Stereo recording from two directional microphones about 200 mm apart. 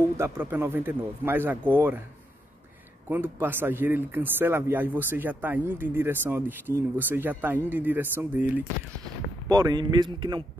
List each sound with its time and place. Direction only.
0.2 s speech: 10° right (ahead or behind)
3.1 s speech: 10° right (ahead or behind)
9.5 s a man's voice: 20° right (ahead or behind)